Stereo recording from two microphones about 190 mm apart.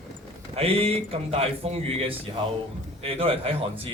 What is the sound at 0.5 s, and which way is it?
A man's voice, 30° right (ahead or behind).